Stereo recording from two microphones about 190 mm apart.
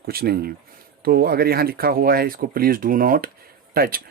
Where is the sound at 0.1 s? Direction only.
55° right (ahead or behind).